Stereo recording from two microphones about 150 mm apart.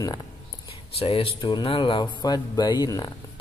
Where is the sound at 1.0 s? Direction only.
40° left (ahead or behind).